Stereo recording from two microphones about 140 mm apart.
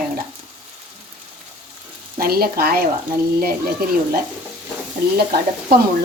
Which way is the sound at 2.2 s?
90° right.